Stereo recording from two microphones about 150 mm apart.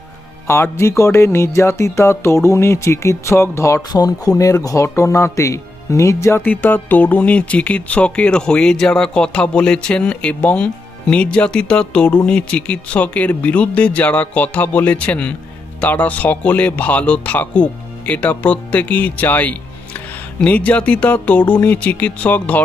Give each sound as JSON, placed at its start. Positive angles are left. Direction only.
{"t": 0.4, "sound": "music", "side_deg": 15}